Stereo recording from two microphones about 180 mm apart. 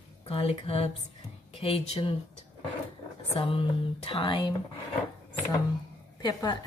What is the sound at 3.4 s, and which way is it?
Speech, 30° left (ahead or behind).